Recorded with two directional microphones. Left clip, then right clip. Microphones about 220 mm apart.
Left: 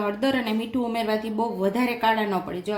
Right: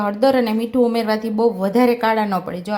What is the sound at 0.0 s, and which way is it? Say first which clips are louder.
Speech: right 8 dB; 30° right (ahead or behind).